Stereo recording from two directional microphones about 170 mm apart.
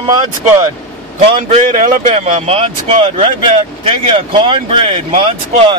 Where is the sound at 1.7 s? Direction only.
50° right (ahead or behind).